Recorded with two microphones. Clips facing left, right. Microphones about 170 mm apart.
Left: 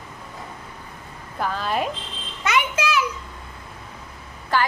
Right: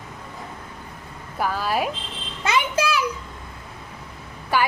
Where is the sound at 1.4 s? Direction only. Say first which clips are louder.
Right 1 dB; 5° right (ahead or behind).